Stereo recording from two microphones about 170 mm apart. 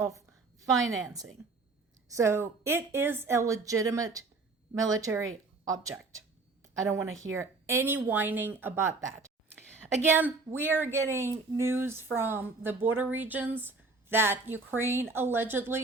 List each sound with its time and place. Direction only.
0.0 s a woman's voice: 20° right (ahead or behind)